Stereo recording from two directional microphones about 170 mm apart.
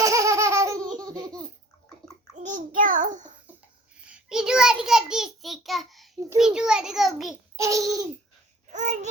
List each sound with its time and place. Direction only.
0.0 s baby laughter: 20° right (ahead or behind)
0.9 s laughter: 20° right (ahead or behind)
2.3 s a child's voice: 50° right (ahead or behind)
4.1 s a child's voice: 5° right (ahead or behind)
7.5 s a child's voice: 20° right (ahead or behind)
8.7 s a child's voice: 40° right (ahead or behind)